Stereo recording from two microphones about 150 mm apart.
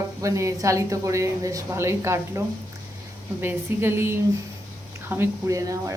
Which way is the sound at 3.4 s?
15° right (ahead or behind).